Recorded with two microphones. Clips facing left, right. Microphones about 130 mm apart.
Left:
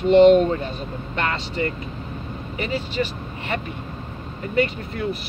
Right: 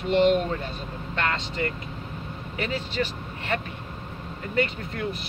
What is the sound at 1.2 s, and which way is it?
Speech, 5° left (ahead or behind).